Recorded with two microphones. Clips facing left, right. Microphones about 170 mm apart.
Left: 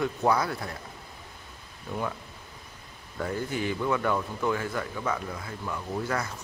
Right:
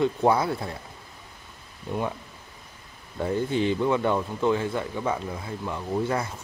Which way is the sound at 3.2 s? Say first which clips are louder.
Right 5 dB; 25° right (ahead or behind).